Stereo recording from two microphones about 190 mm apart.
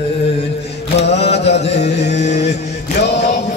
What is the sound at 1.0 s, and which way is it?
Mantra, 35° left (ahead or behind).